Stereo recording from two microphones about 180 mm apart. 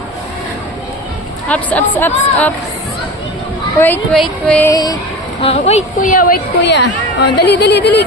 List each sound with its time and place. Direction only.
1.5 s speech: 5° left (ahead or behind)
3.8 s speech: 10° left (ahead or behind)
4.7 s speech: 20° left (ahead or behind)
5.4 s speech: 35° left (ahead or behind)
6.1 s a woman's voice: 55° left (ahead or behind)
6.6 s a woman's voice: 75° left (ahead or behind)